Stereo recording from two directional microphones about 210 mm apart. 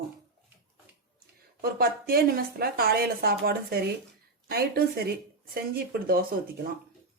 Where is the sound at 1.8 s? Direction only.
45° right (ahead or behind).